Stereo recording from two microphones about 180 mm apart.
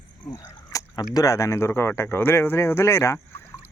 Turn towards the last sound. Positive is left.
turn(degrees=15)  # may be behind; listen again after turning